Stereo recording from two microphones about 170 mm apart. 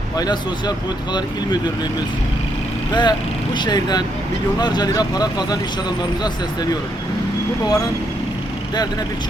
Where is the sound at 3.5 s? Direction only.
25° left (ahead or behind).